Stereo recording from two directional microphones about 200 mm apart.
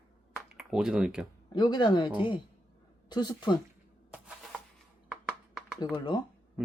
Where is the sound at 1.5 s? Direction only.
20° left (ahead or behind).